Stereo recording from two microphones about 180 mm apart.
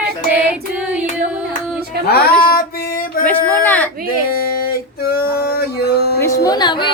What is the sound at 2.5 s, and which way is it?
Music, 55° left (ahead or behind).